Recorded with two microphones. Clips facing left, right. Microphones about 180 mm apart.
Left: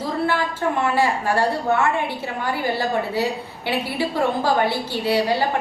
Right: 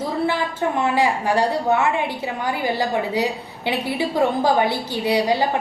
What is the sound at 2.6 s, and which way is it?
A woman's voice, 15° right (ahead or behind).